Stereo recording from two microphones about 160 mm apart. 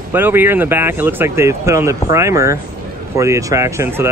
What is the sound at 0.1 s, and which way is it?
Speech, 15° right (ahead or behind).